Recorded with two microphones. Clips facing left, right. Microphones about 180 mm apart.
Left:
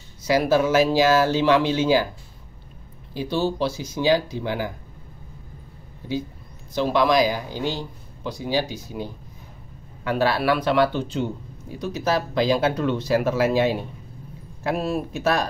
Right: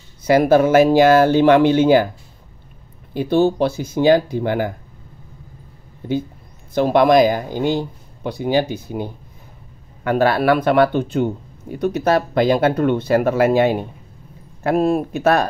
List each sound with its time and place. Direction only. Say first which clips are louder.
0.2 s speech: right 6 dB; 55° right (ahead or behind)
3.1 s speech: right 8 dB; 55° right (ahead or behind)
6.7 s speech: right 6 dB; 55° right (ahead or behind)